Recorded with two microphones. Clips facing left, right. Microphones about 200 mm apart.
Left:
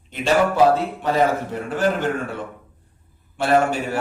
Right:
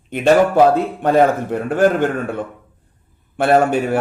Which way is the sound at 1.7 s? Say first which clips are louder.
Right 6 dB; 55° right (ahead or behind).